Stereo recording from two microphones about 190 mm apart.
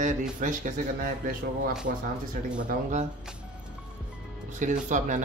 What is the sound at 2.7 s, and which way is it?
Speech, 40° right (ahead or behind).